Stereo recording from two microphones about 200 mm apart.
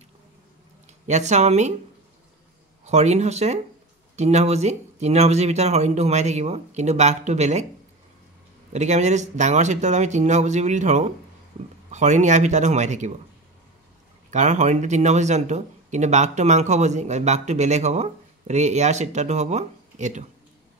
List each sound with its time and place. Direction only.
1.0 s speech: 35° right (ahead or behind)
2.8 s speech: 35° right (ahead or behind)
8.7 s speech: 35° right (ahead or behind)
14.3 s speech: 35° right (ahead or behind)